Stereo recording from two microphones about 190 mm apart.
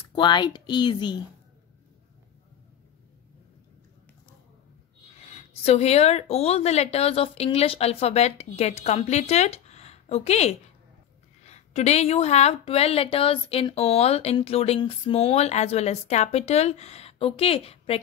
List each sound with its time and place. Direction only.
0.1 s speech: 25° left (ahead or behind)
5.3 s a woman's voice: 35° left (ahead or behind)